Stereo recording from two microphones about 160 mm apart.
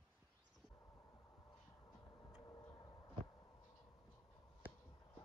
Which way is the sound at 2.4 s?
25° left (ahead or behind).